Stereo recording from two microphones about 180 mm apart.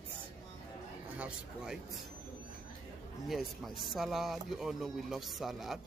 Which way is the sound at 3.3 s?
Centre (ahead or behind).